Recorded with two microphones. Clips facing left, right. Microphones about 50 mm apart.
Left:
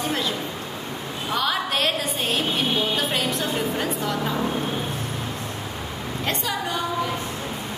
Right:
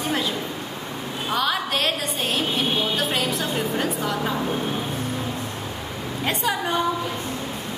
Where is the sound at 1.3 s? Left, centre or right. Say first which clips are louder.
Even; centre.